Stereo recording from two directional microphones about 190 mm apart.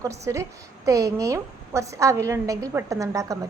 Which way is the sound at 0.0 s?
15° right (ahead or behind).